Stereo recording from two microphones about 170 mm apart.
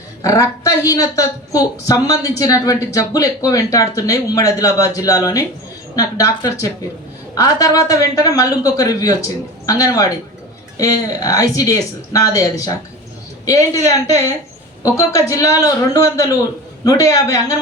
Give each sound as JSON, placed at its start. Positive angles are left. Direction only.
{"t": 0.2, "sound": "speech", "side_deg": 20}